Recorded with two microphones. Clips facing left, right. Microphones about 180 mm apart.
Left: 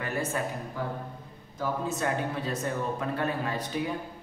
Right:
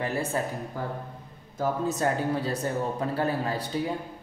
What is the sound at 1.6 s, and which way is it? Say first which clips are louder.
Speech: right 4 dB; 40° right (ahead or behind).